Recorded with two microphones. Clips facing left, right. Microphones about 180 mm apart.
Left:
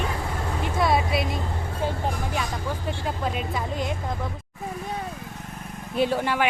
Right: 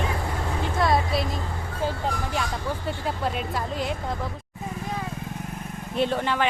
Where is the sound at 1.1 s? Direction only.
Centre (ahead or behind).